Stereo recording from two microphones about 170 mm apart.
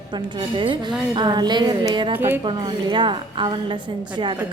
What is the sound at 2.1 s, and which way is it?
Speech, 10° right (ahead or behind).